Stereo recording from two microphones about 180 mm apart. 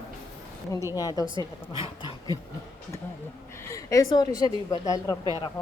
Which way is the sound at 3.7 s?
20° left (ahead or behind).